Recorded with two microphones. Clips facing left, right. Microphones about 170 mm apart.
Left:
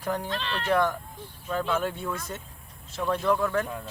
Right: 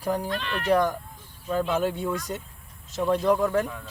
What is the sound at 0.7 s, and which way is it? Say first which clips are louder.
Speech: right 2 dB; 40° right (ahead or behind).